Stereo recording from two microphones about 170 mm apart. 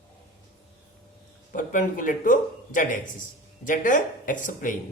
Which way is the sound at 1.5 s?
50° left (ahead or behind).